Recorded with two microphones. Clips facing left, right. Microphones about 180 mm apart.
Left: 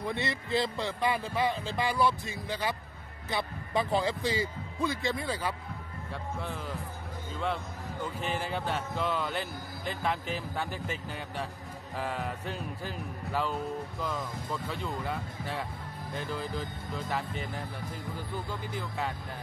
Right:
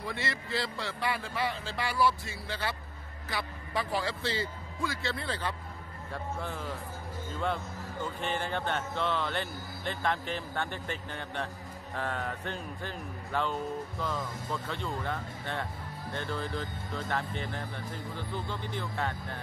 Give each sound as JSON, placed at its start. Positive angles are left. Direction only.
{"t": 0.0, "sound": "speech", "side_deg": 20}
{"t": 6.1, "sound": "speech", "side_deg": 0}